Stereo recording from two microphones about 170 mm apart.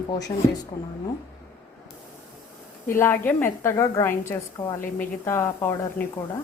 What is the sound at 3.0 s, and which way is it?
A woman's voice, 15° left (ahead or behind).